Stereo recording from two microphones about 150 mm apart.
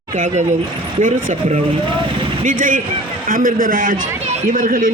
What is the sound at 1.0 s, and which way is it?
A man's voice, 55° right (ahead or behind).